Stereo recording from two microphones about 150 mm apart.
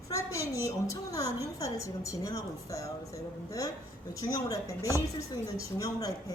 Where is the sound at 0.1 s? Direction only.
20° left (ahead or behind).